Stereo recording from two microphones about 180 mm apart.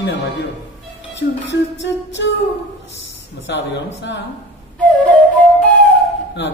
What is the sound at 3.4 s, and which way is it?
Speech, 85° left.